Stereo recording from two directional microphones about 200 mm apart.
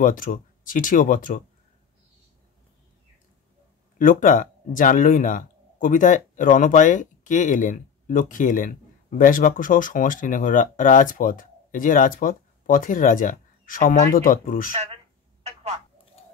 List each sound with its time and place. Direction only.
0.0 s speech: 45° left (ahead or behind)
4.0 s speech: 40° left (ahead or behind)
15.4 s telephone: 35° right (ahead or behind)